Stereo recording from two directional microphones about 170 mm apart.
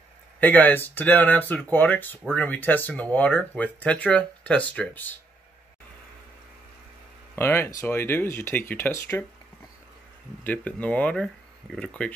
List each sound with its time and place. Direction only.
0.4 s speech: 10° left (ahead or behind)
7.3 s speech: 15° left (ahead or behind)
10.4 s speech: 10° left (ahead or behind)